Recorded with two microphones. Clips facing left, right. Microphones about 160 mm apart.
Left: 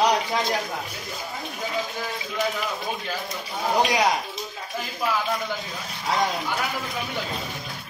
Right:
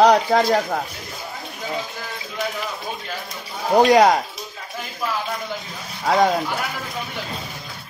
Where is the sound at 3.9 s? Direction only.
55° right (ahead or behind).